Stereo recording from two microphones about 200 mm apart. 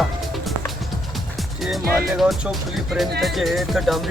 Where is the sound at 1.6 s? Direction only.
Centre (ahead or behind).